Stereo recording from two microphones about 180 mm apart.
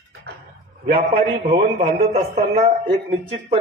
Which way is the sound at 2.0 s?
40° right (ahead or behind).